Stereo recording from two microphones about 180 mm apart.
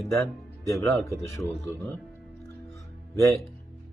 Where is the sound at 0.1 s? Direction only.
15° left (ahead or behind).